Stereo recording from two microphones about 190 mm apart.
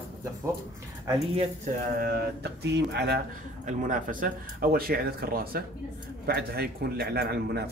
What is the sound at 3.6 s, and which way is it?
Speech, 45° right (ahead or behind).